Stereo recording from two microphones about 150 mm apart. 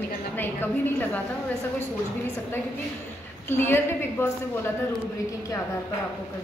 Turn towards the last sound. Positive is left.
turn(degrees=15)  # may be behind; listen again after turning